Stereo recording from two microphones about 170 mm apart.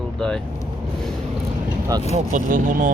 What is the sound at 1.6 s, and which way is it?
Vehicle, 20° right (ahead or behind).